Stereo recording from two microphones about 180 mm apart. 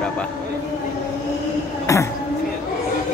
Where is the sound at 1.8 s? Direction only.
15° left (ahead or behind).